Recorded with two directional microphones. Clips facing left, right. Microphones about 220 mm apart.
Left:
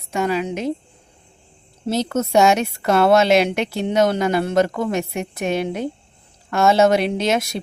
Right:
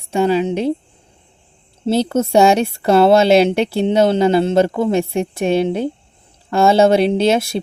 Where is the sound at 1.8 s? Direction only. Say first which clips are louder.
Right 5 dB; 30° right (ahead or behind).